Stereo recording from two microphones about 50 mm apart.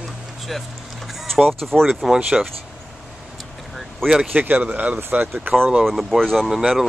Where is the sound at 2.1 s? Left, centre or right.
Centre.